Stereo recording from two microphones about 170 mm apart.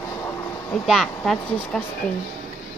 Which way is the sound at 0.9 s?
Centre (ahead or behind).